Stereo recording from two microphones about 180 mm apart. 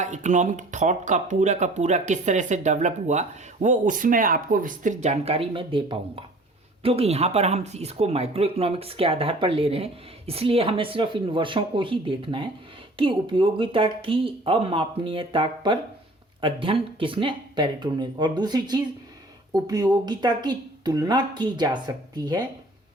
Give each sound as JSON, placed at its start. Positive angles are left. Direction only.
{"t": 0.0, "sound": "a woman's voice", "side_deg": -40}